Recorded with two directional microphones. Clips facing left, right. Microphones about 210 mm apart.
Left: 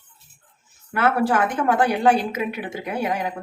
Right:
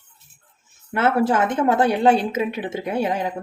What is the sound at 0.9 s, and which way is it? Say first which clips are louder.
A woman's voice: right 1 dB; 25° right (ahead or behind).